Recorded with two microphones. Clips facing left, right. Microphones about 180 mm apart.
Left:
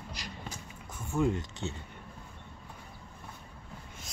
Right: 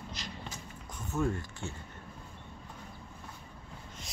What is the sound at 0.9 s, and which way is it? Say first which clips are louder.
Speech: left 3 dB; 10° left (ahead or behind).